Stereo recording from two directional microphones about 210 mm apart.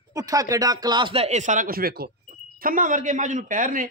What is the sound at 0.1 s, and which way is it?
A man's voice, 15° right (ahead or behind).